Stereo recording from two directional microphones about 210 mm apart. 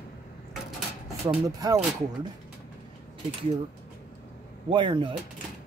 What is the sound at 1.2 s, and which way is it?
Speech, 15° right (ahead or behind).